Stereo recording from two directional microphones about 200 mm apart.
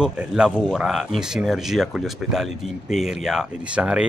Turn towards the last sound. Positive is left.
turn(degrees=-5)  # may be behind; listen again after turning